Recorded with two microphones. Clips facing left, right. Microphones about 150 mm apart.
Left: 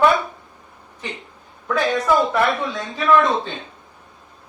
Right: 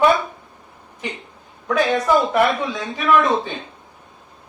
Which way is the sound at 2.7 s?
15° right (ahead or behind).